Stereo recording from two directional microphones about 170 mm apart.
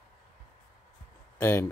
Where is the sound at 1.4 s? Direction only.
15° left (ahead or behind).